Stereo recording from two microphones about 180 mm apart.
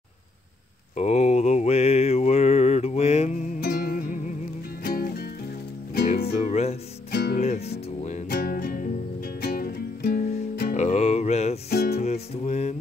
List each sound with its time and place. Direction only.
0.9 s mantra: 40° left (ahead or behind)
3.6 s music: 55° left (ahead or behind)
6.5 s music: 35° left (ahead or behind)
7.1 s music: 55° left (ahead or behind)
7.3 s music: 35° left (ahead or behind)
8.3 s music: 55° left (ahead or behind)
10.8 s music: 40° left (ahead or behind)
11.7 s music: 60° left (ahead or behind)
12.0 s music: 35° left (ahead or behind)